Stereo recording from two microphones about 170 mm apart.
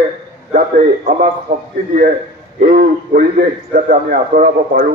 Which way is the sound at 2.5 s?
55° right (ahead or behind).